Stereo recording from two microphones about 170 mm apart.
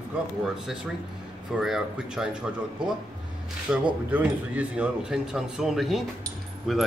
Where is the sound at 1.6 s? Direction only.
5° right (ahead or behind).